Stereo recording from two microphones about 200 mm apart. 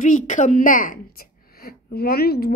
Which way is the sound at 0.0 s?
40° left (ahead or behind).